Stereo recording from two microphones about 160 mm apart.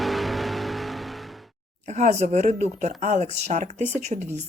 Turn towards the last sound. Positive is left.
turn(degrees=-50)  # may be behind; listen again after turning